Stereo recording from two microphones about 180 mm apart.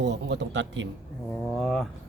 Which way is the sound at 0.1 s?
75° right (ahead or behind).